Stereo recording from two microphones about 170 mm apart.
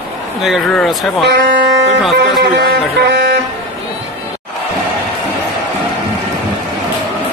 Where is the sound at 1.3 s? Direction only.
90° right.